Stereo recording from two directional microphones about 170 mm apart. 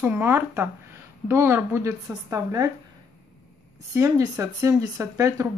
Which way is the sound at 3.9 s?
20° right (ahead or behind).